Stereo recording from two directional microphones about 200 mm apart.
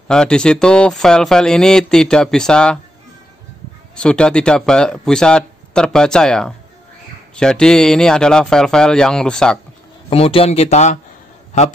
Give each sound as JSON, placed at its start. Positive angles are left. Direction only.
{"t": 0.1, "sound": "speech", "side_deg": 5}
{"t": 3.9, "sound": "speech", "side_deg": 5}
{"t": 10.0, "sound": "a man's voice", "side_deg": 30}